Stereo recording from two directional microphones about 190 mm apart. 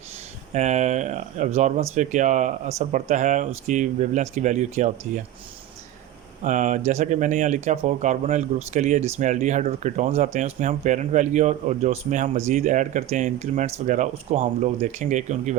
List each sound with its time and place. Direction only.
0.5 s speech: 40° right (ahead or behind)
6.4 s speech: 40° right (ahead or behind)